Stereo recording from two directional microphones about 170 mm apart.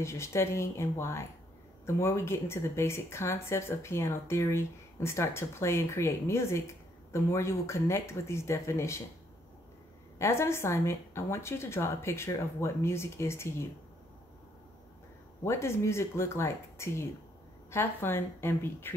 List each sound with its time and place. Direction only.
0.0 s speech: 15° left (ahead or behind)
10.1 s speech: 15° left (ahead or behind)
15.4 s speech: 15° left (ahead or behind)